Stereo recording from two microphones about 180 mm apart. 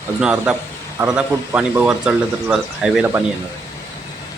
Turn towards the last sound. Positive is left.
turn(degrees=-5)  # may be behind; listen again after turning